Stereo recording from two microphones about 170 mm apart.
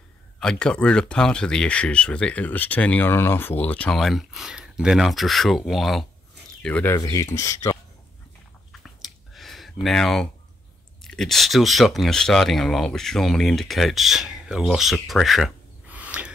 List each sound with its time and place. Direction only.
0.4 s speech: 5° left (ahead or behind)
7.0 s speech: 20° left (ahead or behind)
8.8 s a sound: centre (ahead or behind)
11.0 s speech: centre (ahead or behind)